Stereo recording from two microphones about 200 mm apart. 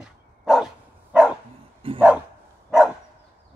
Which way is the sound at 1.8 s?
25° right (ahead or behind).